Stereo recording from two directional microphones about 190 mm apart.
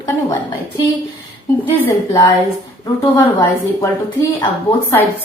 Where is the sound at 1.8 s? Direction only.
15° left (ahead or behind).